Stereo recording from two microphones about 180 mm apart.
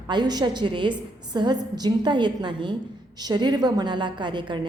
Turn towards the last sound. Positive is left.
turn(degrees=-25)  # may be behind; listen again after turning